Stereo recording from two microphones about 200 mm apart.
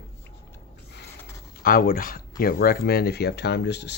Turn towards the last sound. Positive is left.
turn(degrees=60)  # may be behind; listen again after turning